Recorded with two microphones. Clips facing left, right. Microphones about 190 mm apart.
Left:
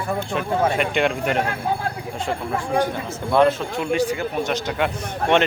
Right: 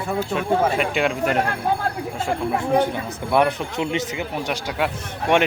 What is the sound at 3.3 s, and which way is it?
Speech, 15° right (ahead or behind).